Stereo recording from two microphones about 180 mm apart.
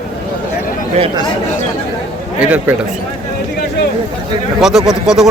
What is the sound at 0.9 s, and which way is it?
Speech, 30° right (ahead or behind).